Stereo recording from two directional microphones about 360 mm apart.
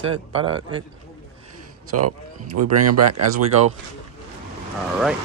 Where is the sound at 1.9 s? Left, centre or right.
Right.